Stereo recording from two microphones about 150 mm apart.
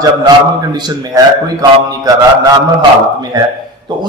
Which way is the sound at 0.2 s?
25° right (ahead or behind).